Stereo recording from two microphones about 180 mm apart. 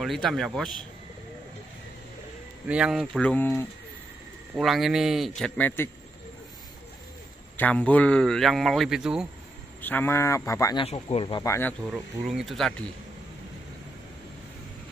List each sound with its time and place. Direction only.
0.0 s speech: centre (ahead or behind)
2.7 s speech: 5° right (ahead or behind)
3.2 s speech: 10° left (ahead or behind)
4.6 s speech: centre (ahead or behind)
7.5 s speech: 10° left (ahead or behind)
9.8 s speech: 10° left (ahead or behind)
10.8 s speech: 35° left (ahead or behind)
11.9 s speech: centre (ahead or behind)